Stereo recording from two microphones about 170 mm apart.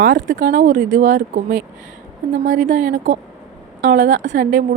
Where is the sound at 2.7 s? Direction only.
45° right (ahead or behind).